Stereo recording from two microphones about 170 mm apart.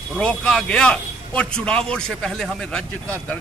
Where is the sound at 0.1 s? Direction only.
5° left (ahead or behind).